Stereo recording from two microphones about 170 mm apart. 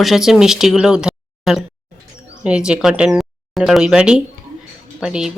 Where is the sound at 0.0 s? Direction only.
Centre (ahead or behind).